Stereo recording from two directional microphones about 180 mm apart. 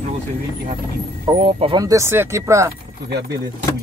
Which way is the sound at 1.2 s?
30° right (ahead or behind).